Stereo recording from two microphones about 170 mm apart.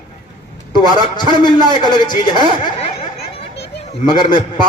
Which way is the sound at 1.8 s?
25° left (ahead or behind).